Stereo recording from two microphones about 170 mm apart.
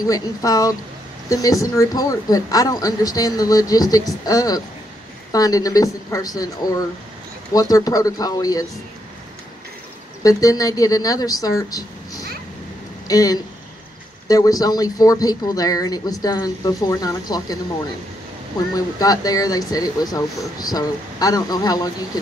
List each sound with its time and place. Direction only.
0.0 s speech: 20° left (ahead or behind)
10.2 s speech: 20° left (ahead or behind)
18.8 s speech: 20° left (ahead or behind)